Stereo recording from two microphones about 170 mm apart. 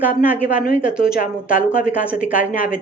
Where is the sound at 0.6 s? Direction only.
55° left (ahead or behind).